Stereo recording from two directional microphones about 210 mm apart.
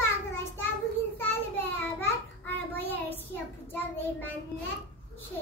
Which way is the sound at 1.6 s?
10° left (ahead or behind).